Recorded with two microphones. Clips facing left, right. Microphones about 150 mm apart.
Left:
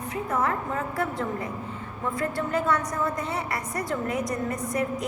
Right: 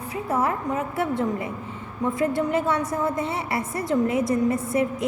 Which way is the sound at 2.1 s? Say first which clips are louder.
Right 5 dB; 25° right (ahead or behind).